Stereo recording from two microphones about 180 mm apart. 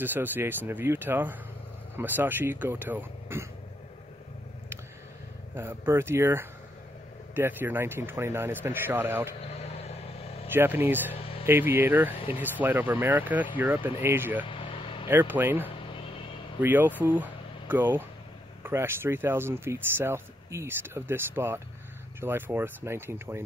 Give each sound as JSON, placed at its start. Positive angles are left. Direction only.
{"t": 0.0, "sound": "speech", "side_deg": -10}
{"t": 5.5, "sound": "speech", "side_deg": -10}
{"t": 10.5, "sound": "speech", "side_deg": -10}
{"t": 14.4, "sound": "vehicle", "side_deg": 30}
{"t": 15.0, "sound": "speech", "side_deg": -10}